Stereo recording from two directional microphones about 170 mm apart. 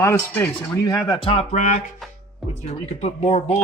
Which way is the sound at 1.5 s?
50° left (ahead or behind).